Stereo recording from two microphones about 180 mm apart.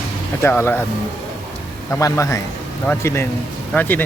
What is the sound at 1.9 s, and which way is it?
Speech, 15° left (ahead or behind).